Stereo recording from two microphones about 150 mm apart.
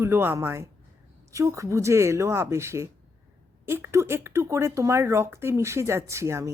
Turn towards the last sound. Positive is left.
turn(degrees=-20)  # may be behind; listen again after turning